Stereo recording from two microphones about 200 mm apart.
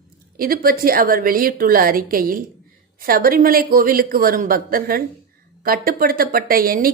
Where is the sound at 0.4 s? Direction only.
45° right (ahead or behind).